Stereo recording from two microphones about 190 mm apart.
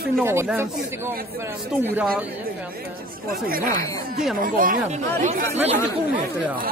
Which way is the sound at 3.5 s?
45° right (ahead or behind).